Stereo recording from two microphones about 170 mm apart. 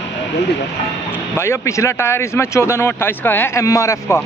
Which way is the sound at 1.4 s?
15° left (ahead or behind).